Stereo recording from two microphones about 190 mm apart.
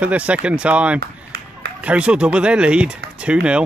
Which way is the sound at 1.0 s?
55° right (ahead or behind).